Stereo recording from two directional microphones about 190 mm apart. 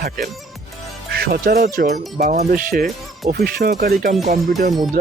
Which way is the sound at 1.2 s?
50° right (ahead or behind).